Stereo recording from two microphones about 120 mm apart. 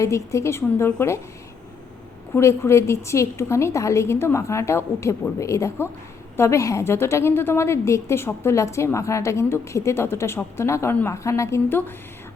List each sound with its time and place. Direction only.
0.0 s a woman's voice: 25° left (ahead or behind)
2.3 s a woman's voice: 20° left (ahead or behind)